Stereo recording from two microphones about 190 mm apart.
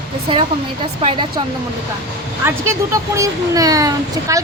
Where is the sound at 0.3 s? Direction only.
25° right (ahead or behind).